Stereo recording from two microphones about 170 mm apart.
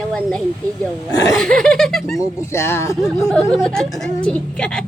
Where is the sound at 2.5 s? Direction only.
15° left (ahead or behind).